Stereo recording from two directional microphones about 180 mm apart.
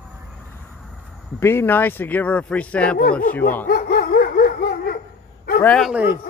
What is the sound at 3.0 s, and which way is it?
Speech, 50° left (ahead or behind).